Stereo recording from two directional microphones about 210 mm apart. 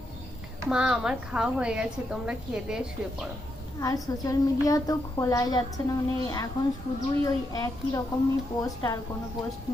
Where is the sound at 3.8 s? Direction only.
15° left (ahead or behind).